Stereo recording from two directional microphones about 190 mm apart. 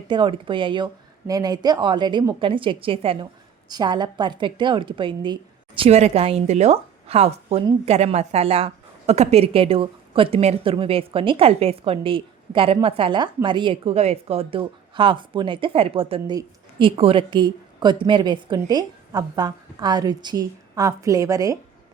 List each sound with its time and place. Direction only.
0.1 s a woman's voice: 25° right (ahead or behind)